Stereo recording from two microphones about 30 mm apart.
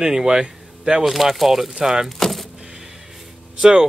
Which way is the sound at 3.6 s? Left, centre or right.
Right.